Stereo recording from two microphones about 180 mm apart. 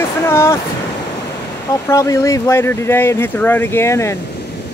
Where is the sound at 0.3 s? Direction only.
15° left (ahead or behind).